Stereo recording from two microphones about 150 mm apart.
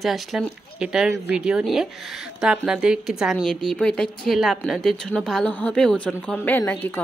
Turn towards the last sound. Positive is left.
turn(degrees=15)  # may be behind; listen again after turning